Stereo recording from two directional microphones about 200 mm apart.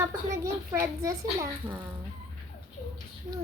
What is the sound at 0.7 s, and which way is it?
A child's voice, 15° right (ahead or behind).